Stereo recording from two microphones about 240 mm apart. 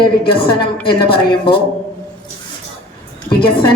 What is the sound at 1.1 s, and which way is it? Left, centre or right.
Speech, centre.